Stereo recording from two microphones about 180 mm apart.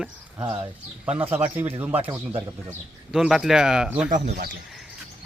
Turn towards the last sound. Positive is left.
turn(degrees=-55)  # may be behind; listen again after turning